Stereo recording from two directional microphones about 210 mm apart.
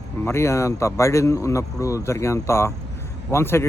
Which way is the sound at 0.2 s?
10° left (ahead or behind).